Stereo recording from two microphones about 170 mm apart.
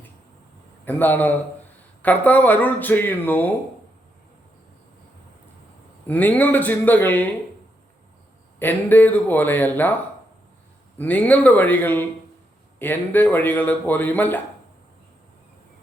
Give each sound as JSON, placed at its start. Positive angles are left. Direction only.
{"t": 0.9, "sound": "speech", "side_deg": 10}
{"t": 6.1, "sound": "speech", "side_deg": 10}
{"t": 8.5, "sound": "speech", "side_deg": 10}
{"t": 10.9, "sound": "speech", "side_deg": 10}